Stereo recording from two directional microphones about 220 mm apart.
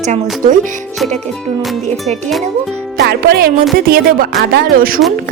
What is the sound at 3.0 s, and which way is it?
Music, 45° right (ahead or behind).